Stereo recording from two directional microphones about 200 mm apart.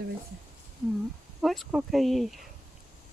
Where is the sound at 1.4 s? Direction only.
Centre (ahead or behind).